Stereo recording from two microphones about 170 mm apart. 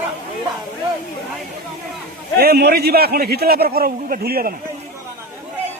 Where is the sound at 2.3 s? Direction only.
65° right (ahead or behind).